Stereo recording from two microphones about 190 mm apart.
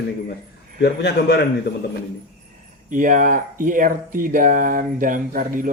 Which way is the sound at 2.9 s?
45° right (ahead or behind).